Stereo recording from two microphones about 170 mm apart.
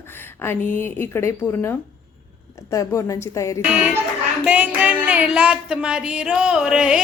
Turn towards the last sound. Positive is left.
turn(degrees=-5)  # may be behind; listen again after turning